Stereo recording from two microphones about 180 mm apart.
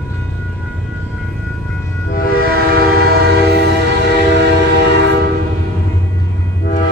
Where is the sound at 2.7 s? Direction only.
60° right (ahead or behind).